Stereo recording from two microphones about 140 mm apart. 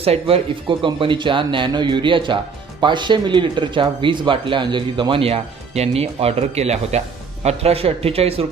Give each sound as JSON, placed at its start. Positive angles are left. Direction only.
{"t": 0.0, "sound": "a man's voice", "side_deg": -45}